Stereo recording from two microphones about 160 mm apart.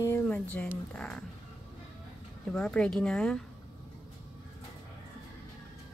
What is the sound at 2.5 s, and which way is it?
Speech, 5° left (ahead or behind).